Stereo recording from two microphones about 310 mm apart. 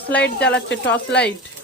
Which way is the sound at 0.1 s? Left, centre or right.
Centre.